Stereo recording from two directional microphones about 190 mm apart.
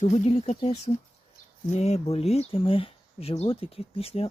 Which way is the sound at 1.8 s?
35° left (ahead or behind).